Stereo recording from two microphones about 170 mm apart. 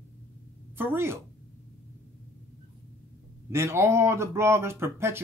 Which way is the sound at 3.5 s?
15° right (ahead or behind).